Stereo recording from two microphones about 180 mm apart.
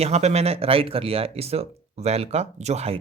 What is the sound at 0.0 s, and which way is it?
Speech, 35° right (ahead or behind).